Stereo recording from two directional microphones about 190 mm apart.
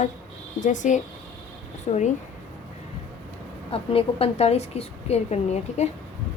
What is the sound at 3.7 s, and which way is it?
A woman's voice, 30° left (ahead or behind).